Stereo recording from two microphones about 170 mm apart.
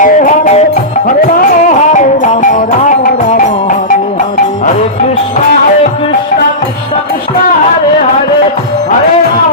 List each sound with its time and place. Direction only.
0.0 s music: 50° left (ahead or behind)